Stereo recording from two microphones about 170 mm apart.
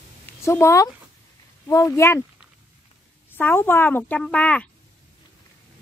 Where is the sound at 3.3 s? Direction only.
10° left (ahead or behind).